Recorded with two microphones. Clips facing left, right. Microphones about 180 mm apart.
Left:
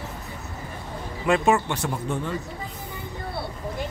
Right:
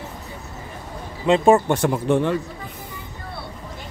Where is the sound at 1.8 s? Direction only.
75° right (ahead or behind).